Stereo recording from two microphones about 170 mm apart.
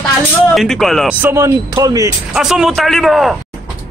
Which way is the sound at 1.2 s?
15° right (ahead or behind).